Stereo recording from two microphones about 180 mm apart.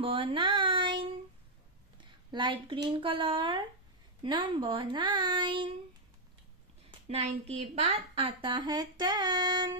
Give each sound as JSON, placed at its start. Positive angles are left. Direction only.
{"t": 0.0, "sound": "child singing", "side_deg": -30}
{"t": 2.0, "sound": "a woman's voice", "side_deg": -25}
{"t": 6.9, "sound": "a woman's voice", "side_deg": -35}